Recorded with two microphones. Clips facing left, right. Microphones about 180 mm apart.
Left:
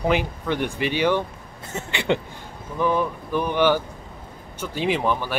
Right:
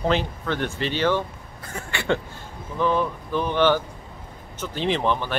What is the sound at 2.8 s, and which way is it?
Speech, 10° left (ahead or behind).